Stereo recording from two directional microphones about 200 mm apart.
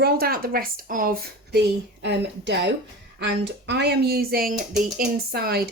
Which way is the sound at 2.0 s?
60° right (ahead or behind).